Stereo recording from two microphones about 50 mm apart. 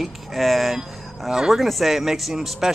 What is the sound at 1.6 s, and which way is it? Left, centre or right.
Speech, centre.